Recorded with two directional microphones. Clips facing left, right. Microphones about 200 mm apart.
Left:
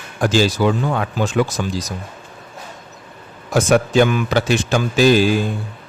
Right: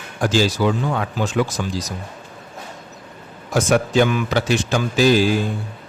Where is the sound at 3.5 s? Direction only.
60° left (ahead or behind).